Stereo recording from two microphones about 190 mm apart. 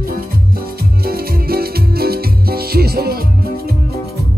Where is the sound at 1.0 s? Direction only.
55° right (ahead or behind).